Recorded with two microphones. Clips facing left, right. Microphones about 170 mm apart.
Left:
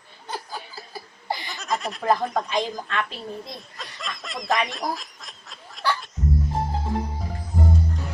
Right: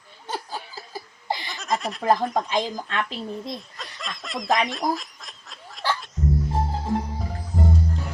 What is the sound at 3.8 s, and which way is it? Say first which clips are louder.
Snicker: even; centre (ahead or behind).